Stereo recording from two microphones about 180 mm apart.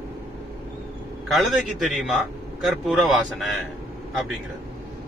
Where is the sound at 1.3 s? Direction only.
Centre (ahead or behind).